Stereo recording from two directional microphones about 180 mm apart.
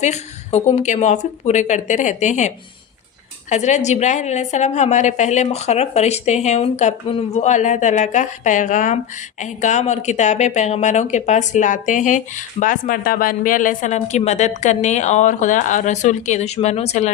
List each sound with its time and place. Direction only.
0.0 s speech: 40° left (ahead or behind)
3.5 s speech: 40° left (ahead or behind)